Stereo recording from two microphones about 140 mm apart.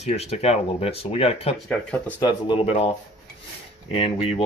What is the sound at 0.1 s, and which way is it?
Speech, 50° left (ahead or behind).